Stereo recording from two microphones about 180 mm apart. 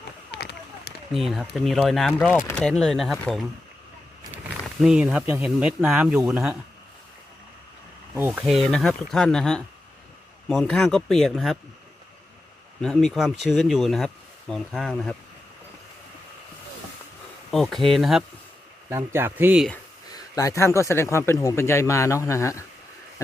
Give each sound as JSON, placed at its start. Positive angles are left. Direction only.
{"t": 0.3, "sound": "a sound", "side_deg": 65}
{"t": 1.1, "sound": "speech", "side_deg": 0}
{"t": 4.6, "sound": "speech", "side_deg": 0}
{"t": 8.1, "sound": "speech", "side_deg": -10}
{"t": 12.8, "sound": "speech", "side_deg": 5}
{"t": 17.5, "sound": "speech", "side_deg": 0}
{"t": 18.9, "sound": "speech", "side_deg": -15}
{"t": 20.1, "sound": "speech", "side_deg": 20}